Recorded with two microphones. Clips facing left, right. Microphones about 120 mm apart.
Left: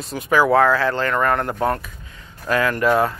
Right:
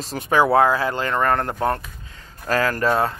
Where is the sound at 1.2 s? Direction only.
30° right (ahead or behind).